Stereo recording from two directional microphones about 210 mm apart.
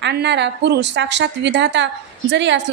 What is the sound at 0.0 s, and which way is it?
A woman's voice, 55° right (ahead or behind).